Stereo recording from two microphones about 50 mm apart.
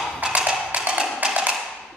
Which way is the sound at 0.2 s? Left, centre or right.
Right.